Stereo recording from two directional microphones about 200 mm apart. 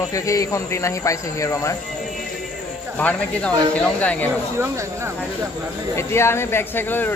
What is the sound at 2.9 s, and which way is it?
Speech, 5° left (ahead or behind).